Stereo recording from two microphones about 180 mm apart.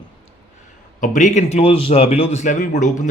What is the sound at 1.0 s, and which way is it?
A man's voice, 45° left (ahead or behind).